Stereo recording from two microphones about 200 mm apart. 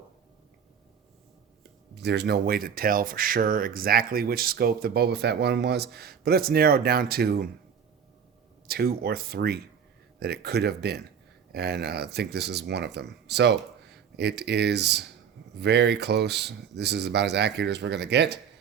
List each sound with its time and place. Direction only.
2.0 s speech: 55° right (ahead or behind)
8.6 s speech: 50° right (ahead or behind)